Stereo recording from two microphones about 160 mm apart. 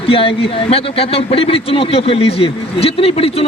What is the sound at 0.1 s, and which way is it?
A man's voice, 35° left (ahead or behind).